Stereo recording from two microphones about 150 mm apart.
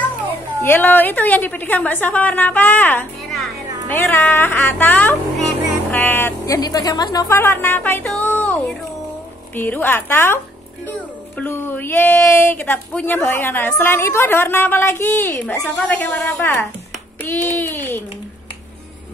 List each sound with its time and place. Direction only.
0.6 s speech: 15° left (ahead or behind)
9.6 s speech: 15° left (ahead or behind)